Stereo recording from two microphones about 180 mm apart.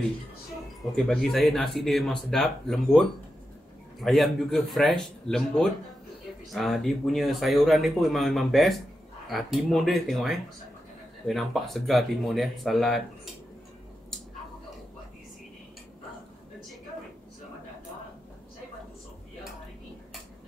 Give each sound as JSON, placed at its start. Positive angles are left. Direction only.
{"t": 0.9, "sound": "speech", "side_deg": 0}
{"t": 4.0, "sound": "speech", "side_deg": 0}